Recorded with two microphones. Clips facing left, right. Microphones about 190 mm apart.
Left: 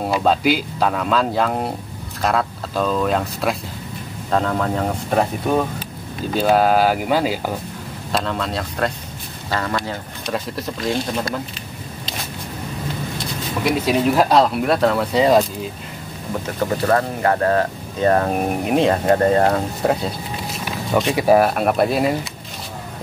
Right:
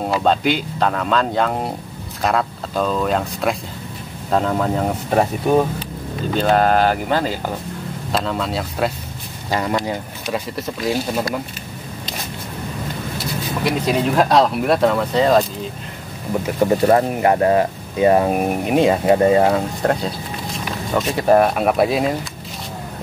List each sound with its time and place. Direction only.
0.2 s speech: 5° left (ahead or behind)
6.3 s speech: 5° left (ahead or behind)
8.1 s speech: centre (ahead or behind)
9.5 s speech: 15° right (ahead or behind)
10.2 s speech: 5° right (ahead or behind)
13.7 s speech: 5° left (ahead or behind)
15.1 s speech: 10° left (ahead or behind)
16.5 s speech: 20° right (ahead or behind); by 20.0 s 5° left (ahead or behind)
21.1 s speech: 10° left (ahead or behind)